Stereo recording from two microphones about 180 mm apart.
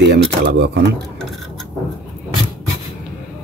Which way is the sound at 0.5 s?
75° right (ahead or behind).